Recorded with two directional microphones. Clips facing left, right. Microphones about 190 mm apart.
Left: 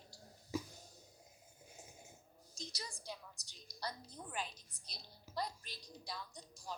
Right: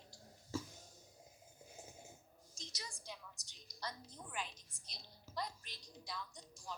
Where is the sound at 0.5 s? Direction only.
15° left (ahead or behind).